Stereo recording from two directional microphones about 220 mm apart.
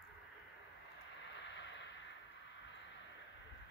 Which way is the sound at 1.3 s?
55° left (ahead or behind).